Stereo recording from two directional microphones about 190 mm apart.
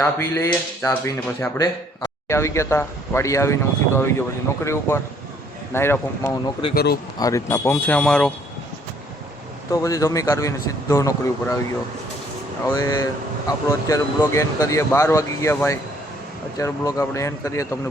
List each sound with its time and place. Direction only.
0.0 s speech: 15° left (ahead or behind)
6.4 s speech: 25° left (ahead or behind)
6.7 s speech: 55° left (ahead or behind)
7.2 s speech: 20° left (ahead or behind)
9.7 s speech: 15° left (ahead or behind)
12.6 s speech: 15° left (ahead or behind)